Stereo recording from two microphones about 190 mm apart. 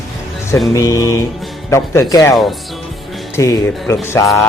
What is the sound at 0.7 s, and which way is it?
A man's voice, 20° left (ahead or behind).